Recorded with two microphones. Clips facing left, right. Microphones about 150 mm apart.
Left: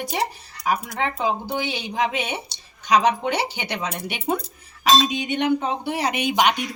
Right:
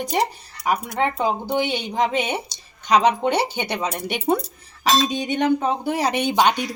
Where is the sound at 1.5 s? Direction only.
20° right (ahead or behind).